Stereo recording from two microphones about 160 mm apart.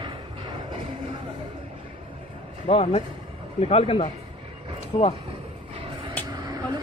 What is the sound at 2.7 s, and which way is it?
Speech, 40° left (ahead or behind).